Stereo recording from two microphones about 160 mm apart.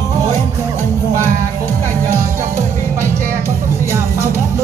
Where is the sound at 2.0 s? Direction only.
15° right (ahead or behind).